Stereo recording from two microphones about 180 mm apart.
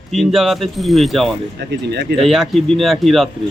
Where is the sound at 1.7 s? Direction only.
70° right (ahead or behind).